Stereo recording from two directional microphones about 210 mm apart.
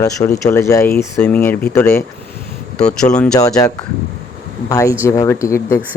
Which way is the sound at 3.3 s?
15° left (ahead or behind).